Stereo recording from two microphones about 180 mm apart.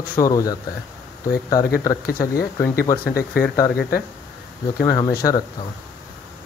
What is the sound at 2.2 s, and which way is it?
Speech, 15° left (ahead or behind).